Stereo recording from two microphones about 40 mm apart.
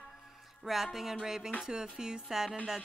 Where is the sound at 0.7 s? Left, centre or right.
Centre.